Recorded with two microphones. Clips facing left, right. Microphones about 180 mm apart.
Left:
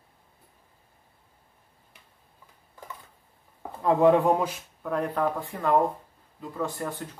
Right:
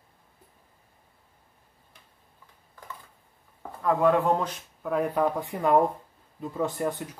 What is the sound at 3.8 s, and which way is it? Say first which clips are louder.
Speech: left 3 dB; 20° left (ahead or behind).